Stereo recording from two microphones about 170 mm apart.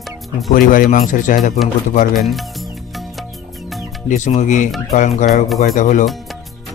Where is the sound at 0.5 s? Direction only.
55° left (ahead or behind).